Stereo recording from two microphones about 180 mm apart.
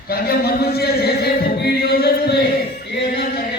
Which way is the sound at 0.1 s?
60° left (ahead or behind).